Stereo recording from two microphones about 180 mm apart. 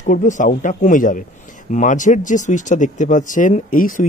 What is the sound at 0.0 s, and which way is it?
Speech, 45° left (ahead or behind).